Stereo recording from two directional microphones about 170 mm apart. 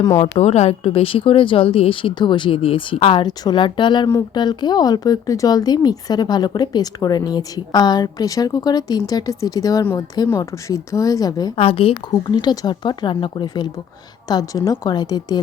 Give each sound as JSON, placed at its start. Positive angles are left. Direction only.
{"t": 0.2, "sound": "speech", "side_deg": 40}
{"t": 11.5, "sound": "speech", "side_deg": 35}